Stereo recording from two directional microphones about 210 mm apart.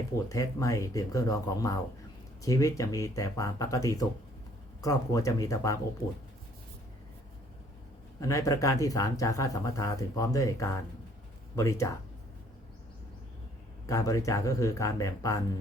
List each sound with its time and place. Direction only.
0.3 s speech: 15° left (ahead or behind)
8.2 s speech: 15° left (ahead or behind)
13.8 s speech: 15° left (ahead or behind)